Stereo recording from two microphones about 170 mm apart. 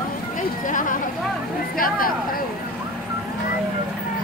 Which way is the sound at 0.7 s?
50° left (ahead or behind).